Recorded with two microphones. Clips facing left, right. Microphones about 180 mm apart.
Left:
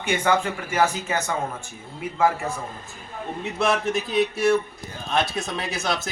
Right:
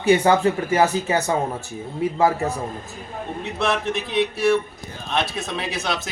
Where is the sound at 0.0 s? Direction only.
35° right (ahead or behind).